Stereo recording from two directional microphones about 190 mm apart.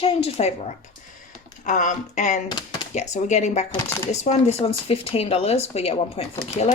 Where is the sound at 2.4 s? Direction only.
20° left (ahead or behind).